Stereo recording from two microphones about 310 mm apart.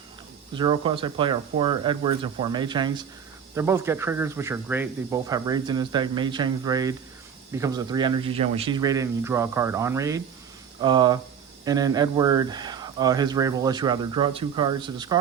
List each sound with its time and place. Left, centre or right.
0.5 s speech: centre